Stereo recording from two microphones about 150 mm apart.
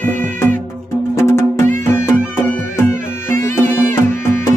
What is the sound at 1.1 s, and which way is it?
Music, 15° left (ahead or behind).